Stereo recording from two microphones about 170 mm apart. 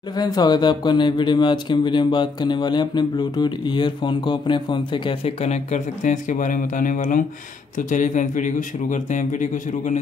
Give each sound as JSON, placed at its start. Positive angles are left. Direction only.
{"t": 0.1, "sound": "speech", "side_deg": 25}